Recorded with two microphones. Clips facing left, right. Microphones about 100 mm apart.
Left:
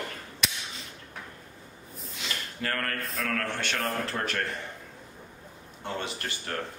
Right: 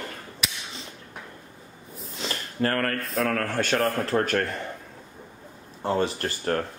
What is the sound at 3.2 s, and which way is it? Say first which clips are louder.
A man's voice: right 7 dB; 40° right (ahead or behind).